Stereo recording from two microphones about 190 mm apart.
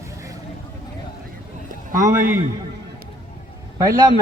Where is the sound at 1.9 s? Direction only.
45° right (ahead or behind).